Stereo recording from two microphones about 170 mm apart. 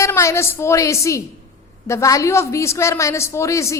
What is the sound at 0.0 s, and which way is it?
A woman's voice, 15° left (ahead or behind).